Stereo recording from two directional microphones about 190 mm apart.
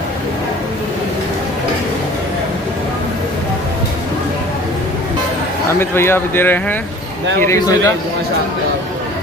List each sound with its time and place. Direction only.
5.7 s a man's voice: 10° left (ahead or behind)